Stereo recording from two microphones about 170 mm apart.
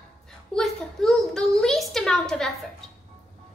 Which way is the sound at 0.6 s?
Centre (ahead or behind).